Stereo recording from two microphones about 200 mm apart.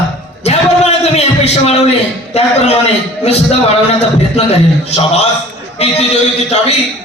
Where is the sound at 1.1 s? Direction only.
30° left (ahead or behind).